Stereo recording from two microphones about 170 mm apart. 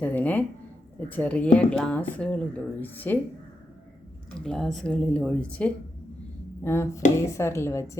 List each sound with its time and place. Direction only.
0.0 s a woman's voice: 10° left (ahead or behind)
4.4 s a woman's voice: centre (ahead or behind)